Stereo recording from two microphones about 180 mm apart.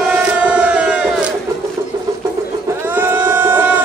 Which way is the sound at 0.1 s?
5° right (ahead or behind).